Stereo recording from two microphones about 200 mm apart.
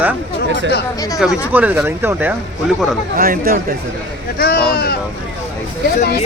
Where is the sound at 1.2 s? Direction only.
5° right (ahead or behind).